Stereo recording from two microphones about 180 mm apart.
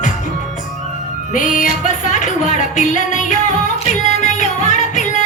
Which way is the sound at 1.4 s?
45° left (ahead or behind).